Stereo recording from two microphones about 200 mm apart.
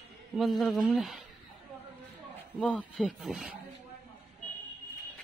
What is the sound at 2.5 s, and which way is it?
Speech, 5° left (ahead or behind).